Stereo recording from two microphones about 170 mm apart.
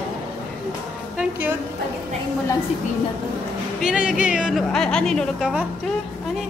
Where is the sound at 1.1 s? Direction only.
10° right (ahead or behind).